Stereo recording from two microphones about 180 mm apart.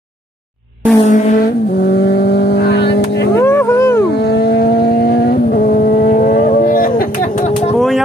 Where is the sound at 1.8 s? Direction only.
65° left (ahead or behind).